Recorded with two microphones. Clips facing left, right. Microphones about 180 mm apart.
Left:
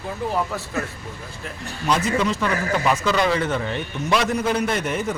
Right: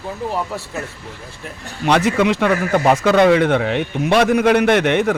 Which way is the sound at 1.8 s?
70° right (ahead or behind).